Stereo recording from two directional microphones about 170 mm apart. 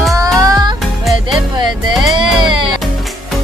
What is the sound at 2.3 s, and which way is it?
Music, 30° right (ahead or behind).